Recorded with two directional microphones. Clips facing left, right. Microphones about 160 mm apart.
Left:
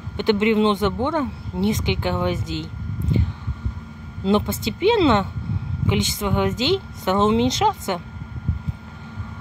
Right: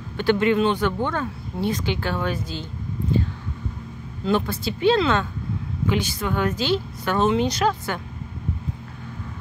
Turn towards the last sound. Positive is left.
turn(degrees=20)  # may be behind; listen again after turning